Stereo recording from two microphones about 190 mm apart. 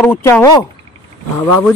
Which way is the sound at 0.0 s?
10° left (ahead or behind).